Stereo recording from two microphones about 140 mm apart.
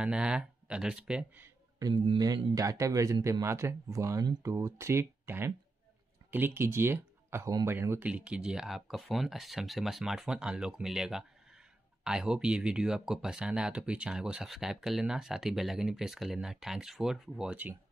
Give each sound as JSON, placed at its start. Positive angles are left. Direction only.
{"t": 0.0, "sound": "speech", "side_deg": -5}
{"t": 1.8, "sound": "a man's voice", "side_deg": -25}